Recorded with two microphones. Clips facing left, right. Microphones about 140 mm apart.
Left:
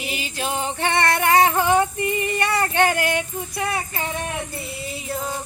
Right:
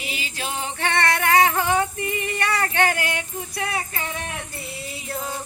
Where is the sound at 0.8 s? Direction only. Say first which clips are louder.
Left 1 dB; 15° left (ahead or behind).